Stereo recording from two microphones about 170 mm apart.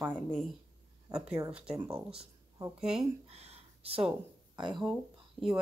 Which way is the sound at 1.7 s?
20° right (ahead or behind).